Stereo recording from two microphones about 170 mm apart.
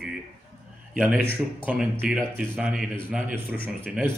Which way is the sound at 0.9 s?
5° right (ahead or behind).